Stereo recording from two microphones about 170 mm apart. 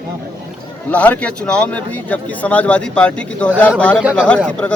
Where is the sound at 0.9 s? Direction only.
10° left (ahead or behind).